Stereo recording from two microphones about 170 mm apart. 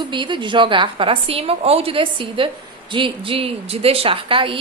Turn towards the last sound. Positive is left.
turn(degrees=-30)  # may be behind; listen again after turning